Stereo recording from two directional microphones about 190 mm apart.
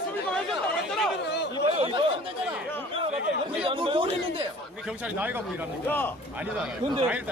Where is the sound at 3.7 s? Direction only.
25° right (ahead or behind).